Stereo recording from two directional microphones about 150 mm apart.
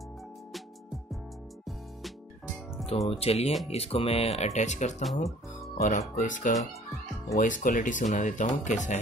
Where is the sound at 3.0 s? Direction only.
40° left (ahead or behind).